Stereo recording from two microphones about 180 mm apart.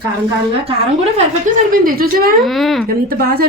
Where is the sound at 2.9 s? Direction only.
55° right (ahead or behind).